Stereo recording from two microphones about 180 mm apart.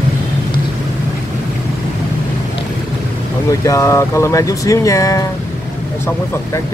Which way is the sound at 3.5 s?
15° left (ahead or behind).